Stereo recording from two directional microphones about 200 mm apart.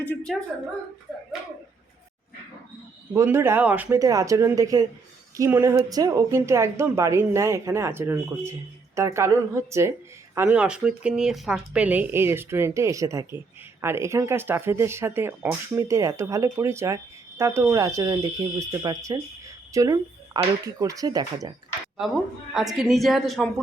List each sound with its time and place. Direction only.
0.0 s a woman's voice: 5° left (ahead or behind)
3.1 s speech: 10° right (ahead or behind)
22.5 s a woman's voice: centre (ahead or behind)